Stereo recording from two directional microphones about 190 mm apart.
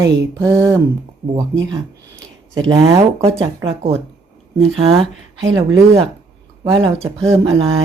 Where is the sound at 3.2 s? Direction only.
35° right (ahead or behind).